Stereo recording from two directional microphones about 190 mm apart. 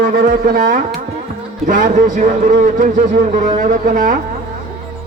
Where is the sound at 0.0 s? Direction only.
45° right (ahead or behind).